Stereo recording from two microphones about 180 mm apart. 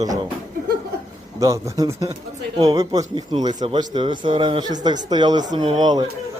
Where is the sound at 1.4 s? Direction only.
20° right (ahead or behind).